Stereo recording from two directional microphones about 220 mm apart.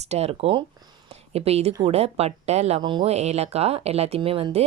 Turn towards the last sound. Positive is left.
turn(degrees=-25)  # may be behind; listen again after turning